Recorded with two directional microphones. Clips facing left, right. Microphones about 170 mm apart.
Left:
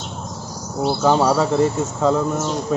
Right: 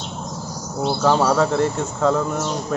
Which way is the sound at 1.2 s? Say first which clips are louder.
Left 1 dB; 5° left (ahead or behind).